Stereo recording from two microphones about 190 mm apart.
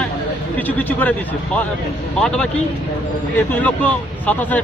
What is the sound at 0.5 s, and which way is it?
A man's voice, 10° left (ahead or behind).